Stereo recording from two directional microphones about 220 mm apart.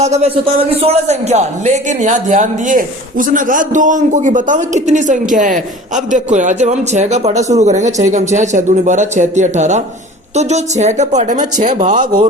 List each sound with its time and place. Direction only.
0.0 s a man's voice: 30° right (ahead or behind)